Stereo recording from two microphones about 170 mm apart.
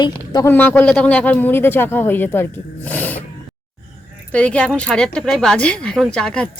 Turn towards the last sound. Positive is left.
turn(degrees=5)  # may be behind; listen again after turning